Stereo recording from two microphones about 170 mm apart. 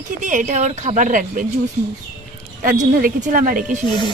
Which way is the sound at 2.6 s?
55° right (ahead or behind).